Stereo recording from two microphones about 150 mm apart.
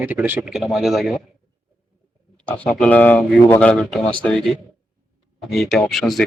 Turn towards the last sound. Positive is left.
turn(degrees=0)  # may be behind; listen again after turning